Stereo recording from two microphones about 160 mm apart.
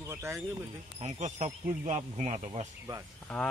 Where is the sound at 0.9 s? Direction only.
45° right (ahead or behind).